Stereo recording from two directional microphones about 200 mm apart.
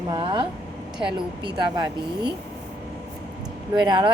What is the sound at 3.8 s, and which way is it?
Speech, 20° right (ahead or behind).